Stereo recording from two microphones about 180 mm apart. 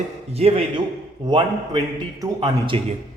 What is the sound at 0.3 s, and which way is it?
A man's voice, 35° right (ahead or behind).